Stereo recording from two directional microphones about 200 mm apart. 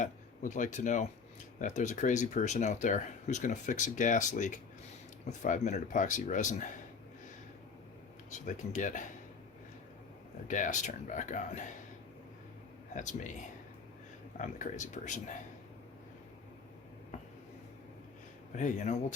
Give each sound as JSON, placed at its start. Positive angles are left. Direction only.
{"t": 0.0, "sound": "speech", "side_deg": 40}
{"t": 8.3, "sound": "speech", "side_deg": 40}
{"t": 10.5, "sound": "speech", "side_deg": 40}
{"t": 13.0, "sound": "speech", "side_deg": 40}
{"t": 14.3, "sound": "speech", "side_deg": 40}
{"t": 18.5, "sound": "speech", "side_deg": 40}